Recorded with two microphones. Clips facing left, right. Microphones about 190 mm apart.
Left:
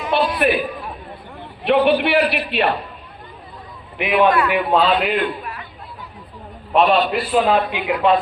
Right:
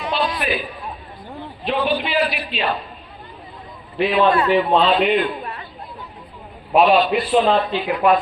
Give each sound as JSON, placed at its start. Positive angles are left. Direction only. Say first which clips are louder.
{"t": 0.1, "sound": "a sound", "louder": "left 6 dB", "side_deg": 60}
{"t": 1.6, "sound": "a man's voice", "louder": "left 6 dB", "side_deg": 65}
{"t": 3.9, "sound": "a man's voice", "louder": "even", "side_deg": 15}
{"t": 4.3, "sound": "a man's voice", "louder": "even", "side_deg": -30}
{"t": 4.5, "sound": "a man's voice", "louder": "right 1 dB", "side_deg": 5}
{"t": 6.7, "sound": "a man's voice", "louder": "right 1 dB", "side_deg": 0}